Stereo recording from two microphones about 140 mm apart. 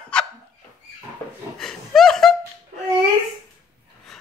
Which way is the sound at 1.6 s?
Centre (ahead or behind).